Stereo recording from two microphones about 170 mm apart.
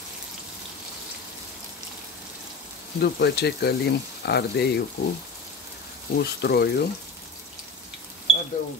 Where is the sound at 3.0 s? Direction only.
75° left (ahead or behind).